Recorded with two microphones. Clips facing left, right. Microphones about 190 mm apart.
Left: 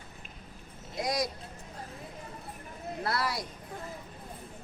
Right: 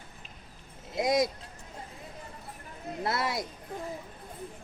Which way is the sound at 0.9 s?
25° right (ahead or behind).